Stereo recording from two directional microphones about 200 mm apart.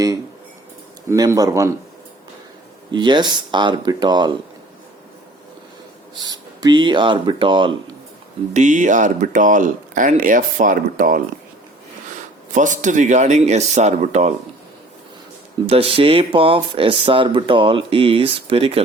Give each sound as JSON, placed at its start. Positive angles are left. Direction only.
{"t": 1.1, "sound": "speech", "side_deg": -20}
{"t": 2.9, "sound": "speech", "side_deg": -20}
{"t": 6.2, "sound": "speech", "side_deg": -20}
{"t": 8.5, "sound": "speech", "side_deg": -40}
{"t": 12.5, "sound": "speech", "side_deg": -40}
{"t": 15.6, "sound": "speech", "side_deg": -30}